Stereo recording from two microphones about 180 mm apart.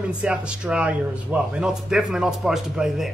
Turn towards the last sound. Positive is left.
turn(degrees=0)  # may be behind; listen again after turning